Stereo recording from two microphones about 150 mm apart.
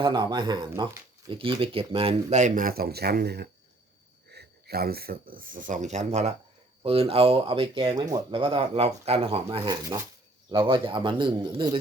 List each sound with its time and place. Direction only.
0.0 s speech: 30° right (ahead or behind)
9.6 s speech: 25° right (ahead or behind)